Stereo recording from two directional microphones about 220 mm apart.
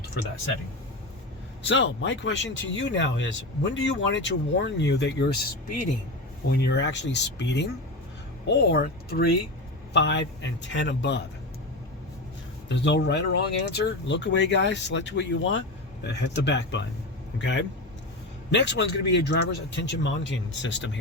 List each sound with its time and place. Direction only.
1.6 s speech: 60° left (ahead or behind)
12.6 s speech: 55° left (ahead or behind)